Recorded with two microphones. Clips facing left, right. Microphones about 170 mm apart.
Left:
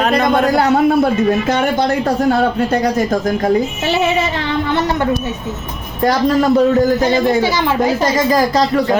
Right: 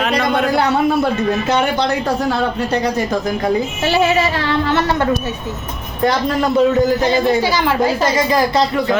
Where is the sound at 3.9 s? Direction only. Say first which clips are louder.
Right 1 dB; 20° left (ahead or behind).